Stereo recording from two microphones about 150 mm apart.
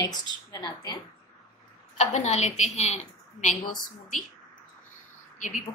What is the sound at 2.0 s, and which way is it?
A woman's voice, 50° left (ahead or behind).